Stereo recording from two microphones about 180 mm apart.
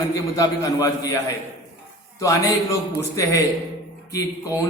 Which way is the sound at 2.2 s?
20° left (ahead or behind).